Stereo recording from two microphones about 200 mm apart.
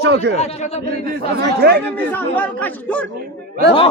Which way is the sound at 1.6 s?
50° right (ahead or behind).